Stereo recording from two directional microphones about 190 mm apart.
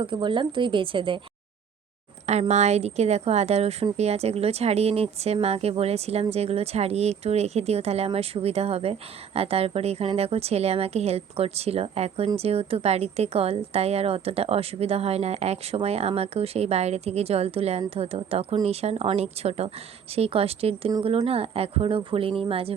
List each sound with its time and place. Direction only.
0.0 s speech: 25° right (ahead or behind)
2.2 s speech: 35° right (ahead or behind)